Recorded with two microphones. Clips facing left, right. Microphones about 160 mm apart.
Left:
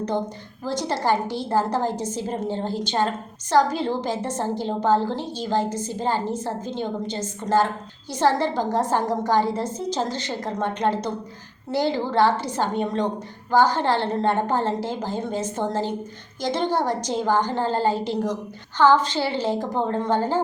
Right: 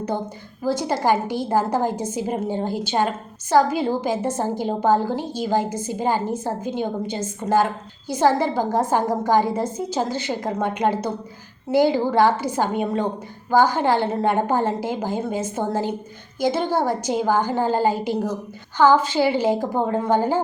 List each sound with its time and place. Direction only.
0.6 s a woman's voice: 10° right (ahead or behind)